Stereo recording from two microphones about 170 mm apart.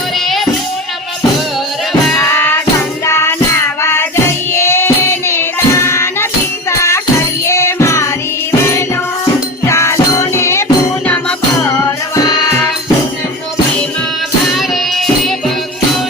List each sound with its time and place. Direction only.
2.1 s music: 15° left (ahead or behind)
9.6 s music: 15° left (ahead or behind)
14.9 s music: centre (ahead or behind)